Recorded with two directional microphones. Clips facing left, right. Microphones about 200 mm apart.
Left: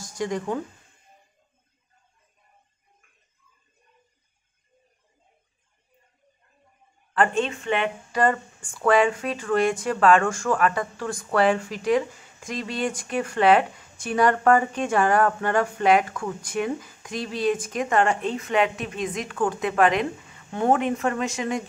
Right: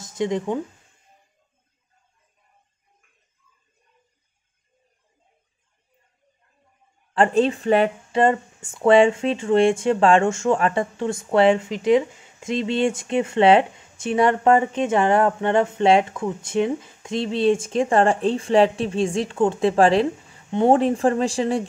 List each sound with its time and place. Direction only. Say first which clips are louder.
0.0 s speech: right 4 dB; 20° right (ahead or behind)
7.2 s speech: right 5 dB; 35° right (ahead or behind)
8.2 s speech: right 4 dB; 25° right (ahead or behind)